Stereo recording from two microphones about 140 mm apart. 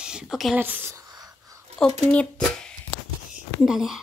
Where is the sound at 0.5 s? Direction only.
15° right (ahead or behind).